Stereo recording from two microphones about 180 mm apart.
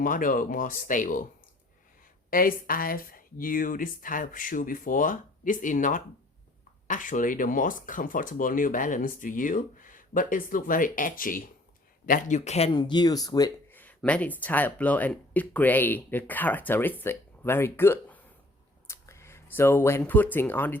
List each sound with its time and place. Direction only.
0.0 s speech: 50° left (ahead or behind)
2.3 s speech: 50° left (ahead or behind); by 20.7 s 10° left (ahead or behind)